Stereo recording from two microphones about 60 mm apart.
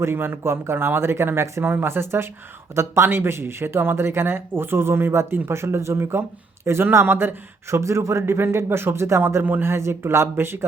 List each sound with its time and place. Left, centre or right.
0.0 s speech: right